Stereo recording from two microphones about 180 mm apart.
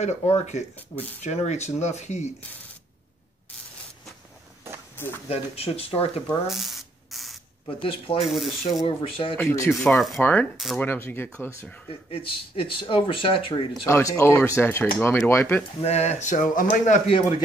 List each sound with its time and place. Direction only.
0.0 s speech: 40° left (ahead or behind)
4.9 s a sound: 10° left (ahead or behind)
5.3 s speech: 35° left (ahead or behind)
6.2 s ratchet: centre (ahead or behind)
7.6 s speech: 30° left (ahead or behind)
8.3 s speech: centre (ahead or behind)
8.8 s speech: 30° left (ahead or behind)
9.4 s speech: 15° left (ahead or behind)
9.9 s speech: centre (ahead or behind)
12.1 s speech: 30° left (ahead or behind)
13.8 s speech: 15° left (ahead or behind)
15.8 s speech: 35° left (ahead or behind)